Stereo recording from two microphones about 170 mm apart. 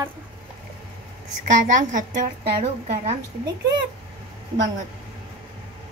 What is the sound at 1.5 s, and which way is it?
A woman's voice, 50° right (ahead or behind).